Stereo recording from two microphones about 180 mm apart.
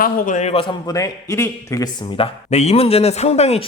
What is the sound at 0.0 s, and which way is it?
Speech, 45° left (ahead or behind).